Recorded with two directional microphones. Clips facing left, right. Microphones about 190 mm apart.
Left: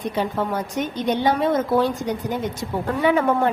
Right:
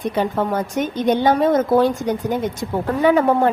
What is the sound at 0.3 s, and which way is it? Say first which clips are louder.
A woman's voice: right 3 dB; 50° right (ahead or behind).